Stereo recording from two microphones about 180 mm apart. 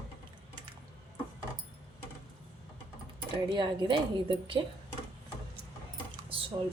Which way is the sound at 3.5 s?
25° right (ahead or behind).